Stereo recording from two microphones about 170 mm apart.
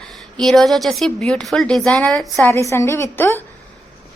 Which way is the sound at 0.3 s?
Centre (ahead or behind).